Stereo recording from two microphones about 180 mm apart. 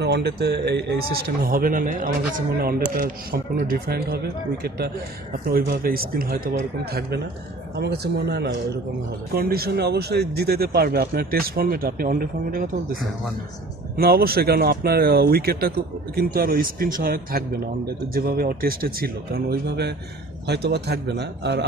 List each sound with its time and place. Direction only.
0.0 s a man's voice: 65° right (ahead or behind)
13.9 s a man's voice: 60° right (ahead or behind)